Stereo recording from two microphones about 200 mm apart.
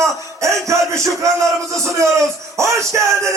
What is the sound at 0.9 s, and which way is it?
A man's voice, 15° right (ahead or behind).